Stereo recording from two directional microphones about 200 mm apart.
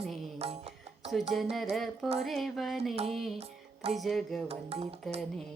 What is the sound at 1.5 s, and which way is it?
Music, centre (ahead or behind).